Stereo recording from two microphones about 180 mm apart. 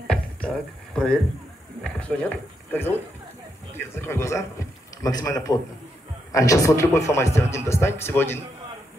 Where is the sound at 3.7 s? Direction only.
15° left (ahead or behind).